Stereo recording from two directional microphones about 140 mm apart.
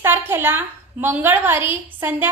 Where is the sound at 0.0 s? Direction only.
15° right (ahead or behind).